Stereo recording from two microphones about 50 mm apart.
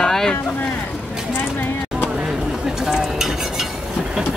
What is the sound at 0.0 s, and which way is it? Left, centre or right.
Boat, centre.